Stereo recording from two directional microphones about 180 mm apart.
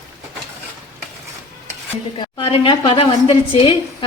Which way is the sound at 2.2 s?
30° left (ahead or behind).